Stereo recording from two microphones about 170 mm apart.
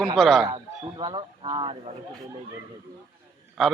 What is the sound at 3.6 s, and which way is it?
Speech, centre (ahead or behind).